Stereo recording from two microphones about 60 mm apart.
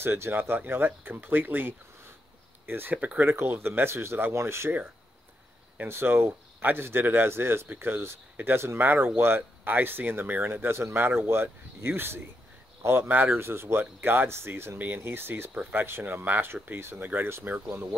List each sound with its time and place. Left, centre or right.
0.0 s speech: right
3.3 s speech: right
5.9 s speech: right